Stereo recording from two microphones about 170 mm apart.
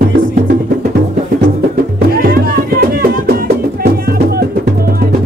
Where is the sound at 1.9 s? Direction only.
60° right (ahead or behind).